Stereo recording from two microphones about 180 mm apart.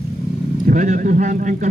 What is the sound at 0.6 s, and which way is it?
A man's voice, 45° right (ahead or behind).